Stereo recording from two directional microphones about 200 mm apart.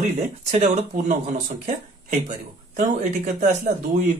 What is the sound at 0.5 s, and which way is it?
Speech, 40° right (ahead or behind).